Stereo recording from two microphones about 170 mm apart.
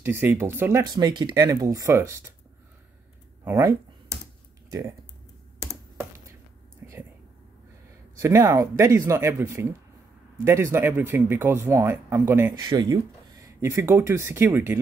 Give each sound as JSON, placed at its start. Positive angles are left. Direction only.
{"t": 0.0, "sound": "speech", "side_deg": -10}
{"t": 0.8, "sound": "speech", "side_deg": -25}
{"t": 3.4, "sound": "a sound", "side_deg": -15}
{"t": 4.6, "sound": "speech", "side_deg": -20}
{"t": 5.6, "sound": "computer keyboard", "side_deg": -15}
{"t": 6.8, "sound": "a sound", "side_deg": -10}
{"t": 8.2, "sound": "speech", "side_deg": -15}
{"t": 12.5, "sound": "speech", "side_deg": -25}